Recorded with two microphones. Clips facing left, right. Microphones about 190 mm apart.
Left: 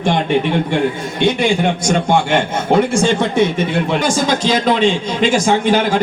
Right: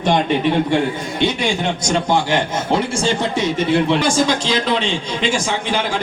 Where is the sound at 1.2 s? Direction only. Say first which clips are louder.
Left 5 dB; 50° left (ahead or behind).